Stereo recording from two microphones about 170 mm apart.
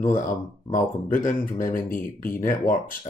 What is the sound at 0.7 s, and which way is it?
Speech, 50° left (ahead or behind).